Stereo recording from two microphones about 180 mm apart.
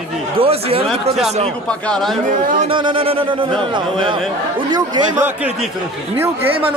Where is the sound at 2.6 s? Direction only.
30° right (ahead or behind).